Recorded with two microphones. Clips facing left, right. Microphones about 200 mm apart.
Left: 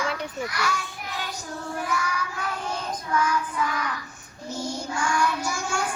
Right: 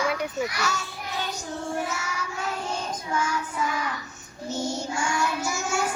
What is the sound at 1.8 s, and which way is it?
Child singing, 25° right (ahead or behind).